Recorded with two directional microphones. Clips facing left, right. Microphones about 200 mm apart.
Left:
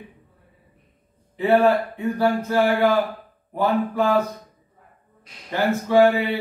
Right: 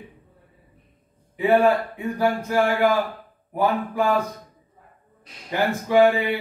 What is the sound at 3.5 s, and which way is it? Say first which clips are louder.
Speech: left 1 dB; 10° right (ahead or behind).